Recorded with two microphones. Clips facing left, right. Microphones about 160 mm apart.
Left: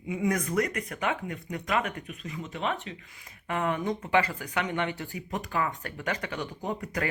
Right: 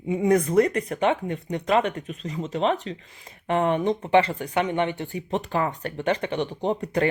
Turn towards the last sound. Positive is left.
turn(degrees=-30)  # may be behind; listen again after turning